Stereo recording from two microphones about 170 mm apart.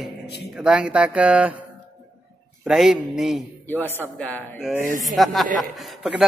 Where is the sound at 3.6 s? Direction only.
10° left (ahead or behind).